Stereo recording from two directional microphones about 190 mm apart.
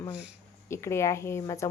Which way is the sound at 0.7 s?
15° left (ahead or behind).